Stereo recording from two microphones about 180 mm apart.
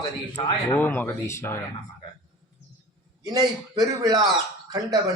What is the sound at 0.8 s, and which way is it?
Speech, 10° left (ahead or behind).